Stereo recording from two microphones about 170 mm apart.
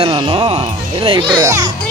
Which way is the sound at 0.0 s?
35° right (ahead or behind).